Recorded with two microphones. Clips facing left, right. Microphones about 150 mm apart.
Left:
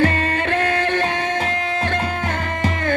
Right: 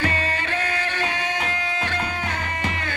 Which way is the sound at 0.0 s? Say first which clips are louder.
Left 7 dB; 55° left (ahead or behind).